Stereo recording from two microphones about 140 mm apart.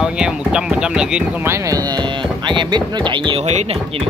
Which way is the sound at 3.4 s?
50° right (ahead or behind).